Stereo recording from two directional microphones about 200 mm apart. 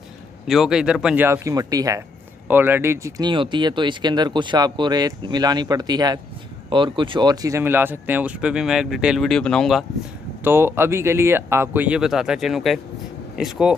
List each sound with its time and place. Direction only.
0.5 s speech: centre (ahead or behind)
10.4 s speech: 10° right (ahead or behind)